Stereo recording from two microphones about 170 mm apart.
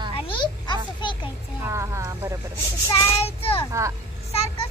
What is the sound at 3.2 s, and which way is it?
Speech, 35° left (ahead or behind).